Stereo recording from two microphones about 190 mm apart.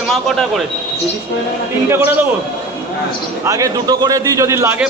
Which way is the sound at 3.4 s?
20° right (ahead or behind).